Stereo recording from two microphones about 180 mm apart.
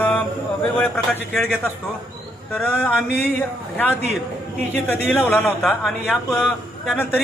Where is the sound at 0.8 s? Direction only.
5° left (ahead or behind).